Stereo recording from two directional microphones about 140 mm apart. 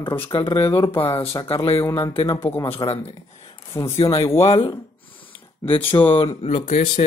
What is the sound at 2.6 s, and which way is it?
A man's voice, 40° left (ahead or behind).